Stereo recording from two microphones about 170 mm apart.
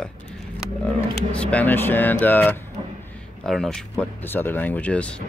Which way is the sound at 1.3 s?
10° left (ahead or behind).